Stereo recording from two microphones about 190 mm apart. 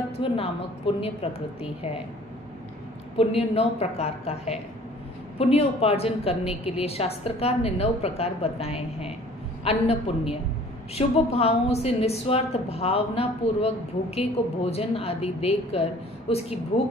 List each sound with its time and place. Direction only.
0.2 s a woman's voice: 30° left (ahead or behind)
3.2 s a woman's voice: 30° left (ahead or behind)